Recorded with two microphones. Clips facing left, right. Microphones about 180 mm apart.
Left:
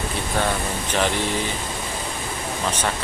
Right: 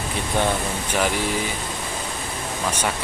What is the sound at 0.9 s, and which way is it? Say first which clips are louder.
Speech: even; 5° right (ahead or behind).